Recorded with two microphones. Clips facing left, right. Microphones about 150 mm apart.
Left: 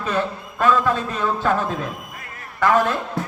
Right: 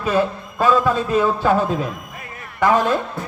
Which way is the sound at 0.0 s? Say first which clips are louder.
Right 4 dB; 10° right (ahead or behind).